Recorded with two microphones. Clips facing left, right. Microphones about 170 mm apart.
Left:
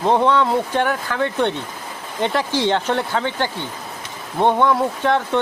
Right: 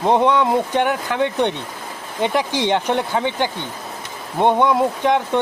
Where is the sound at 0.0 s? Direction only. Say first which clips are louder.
Right 1 dB; 15° right (ahead or behind).